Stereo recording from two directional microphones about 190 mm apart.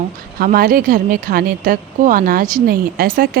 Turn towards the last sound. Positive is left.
turn(degrees=-50)  # may be behind; listen again after turning